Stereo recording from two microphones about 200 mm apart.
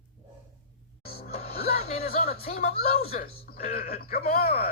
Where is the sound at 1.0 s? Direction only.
50° left (ahead or behind).